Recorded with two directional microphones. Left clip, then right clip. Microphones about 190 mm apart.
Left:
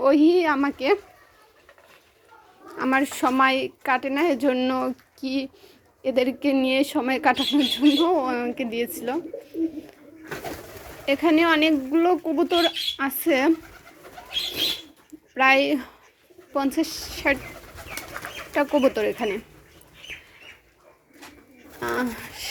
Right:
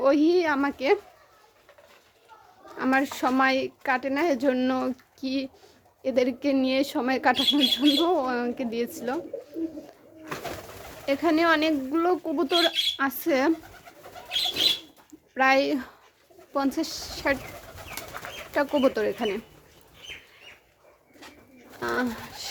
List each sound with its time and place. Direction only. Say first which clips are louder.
0.0 s speech: left 3 dB; 5° right (ahead or behind)
2.7 s speech: left 2 dB; centre (ahead or behind)
11.0 s speech: left 3 dB; centre (ahead or behind)
15.4 s speech: left 3 dB; centre (ahead or behind)
18.5 s speech: left 3 dB; 5° right (ahead or behind)
21.8 s speech: left 1 dB; centre (ahead or behind)